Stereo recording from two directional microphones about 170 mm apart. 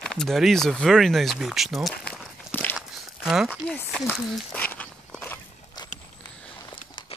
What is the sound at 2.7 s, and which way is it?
Walk, 5° right (ahead or behind).